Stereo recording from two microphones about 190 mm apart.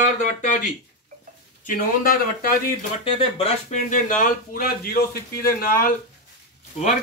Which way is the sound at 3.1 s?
30° left (ahead or behind).